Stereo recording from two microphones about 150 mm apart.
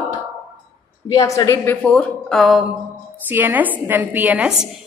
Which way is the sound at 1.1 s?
25° left (ahead or behind).